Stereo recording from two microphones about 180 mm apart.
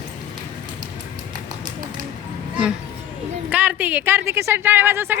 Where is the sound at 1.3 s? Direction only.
45° right (ahead or behind).